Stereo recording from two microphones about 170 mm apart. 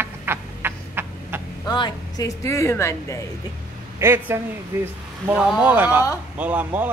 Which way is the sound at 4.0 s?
15° right (ahead or behind).